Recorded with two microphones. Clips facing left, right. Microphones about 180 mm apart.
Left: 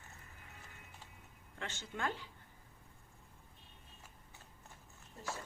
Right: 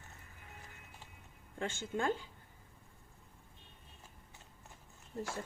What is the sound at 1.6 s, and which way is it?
Speech, 50° right (ahead or behind).